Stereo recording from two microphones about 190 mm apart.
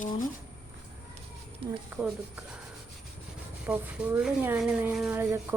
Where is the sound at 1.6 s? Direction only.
30° right (ahead or behind).